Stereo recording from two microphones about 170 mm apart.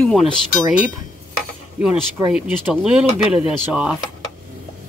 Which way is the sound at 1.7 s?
5° right (ahead or behind).